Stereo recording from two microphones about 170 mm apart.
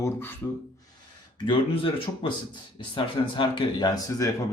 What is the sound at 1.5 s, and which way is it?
Speech, 30° left (ahead or behind).